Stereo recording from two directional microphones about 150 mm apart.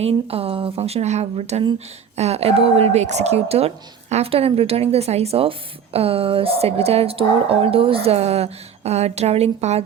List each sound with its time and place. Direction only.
0.0 s a woman's voice: 40° right (ahead or behind)